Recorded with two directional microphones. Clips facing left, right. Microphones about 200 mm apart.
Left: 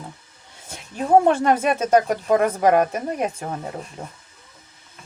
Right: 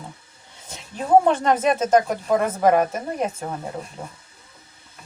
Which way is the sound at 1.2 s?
10° left (ahead or behind).